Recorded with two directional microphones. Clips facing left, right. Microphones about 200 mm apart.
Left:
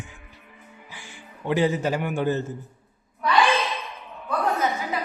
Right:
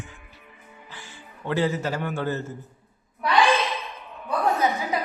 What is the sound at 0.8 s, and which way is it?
A man's voice, 15° left (ahead or behind).